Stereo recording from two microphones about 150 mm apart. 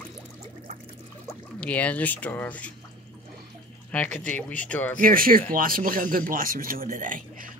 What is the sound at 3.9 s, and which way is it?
Speech, 10° left (ahead or behind).